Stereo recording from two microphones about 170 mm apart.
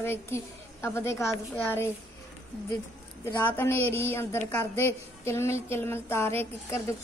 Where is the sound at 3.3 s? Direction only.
15° left (ahead or behind).